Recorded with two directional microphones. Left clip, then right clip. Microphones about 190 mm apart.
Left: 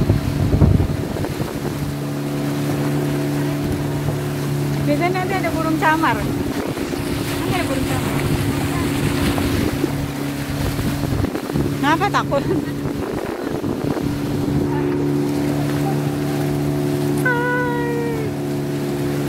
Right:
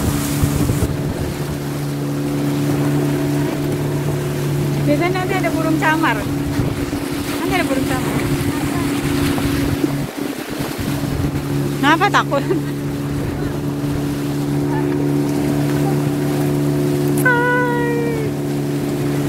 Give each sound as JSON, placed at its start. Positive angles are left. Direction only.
{"t": 5.8, "sound": "speech", "side_deg": 25}
{"t": 11.8, "sound": "speech", "side_deg": 5}